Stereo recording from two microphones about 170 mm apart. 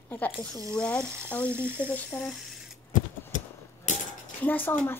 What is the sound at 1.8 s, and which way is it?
Speech, 5° left (ahead or behind).